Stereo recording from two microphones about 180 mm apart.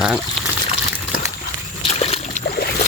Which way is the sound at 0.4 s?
Centre (ahead or behind).